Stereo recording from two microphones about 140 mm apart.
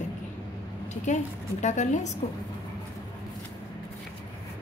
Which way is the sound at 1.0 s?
60° left (ahead or behind).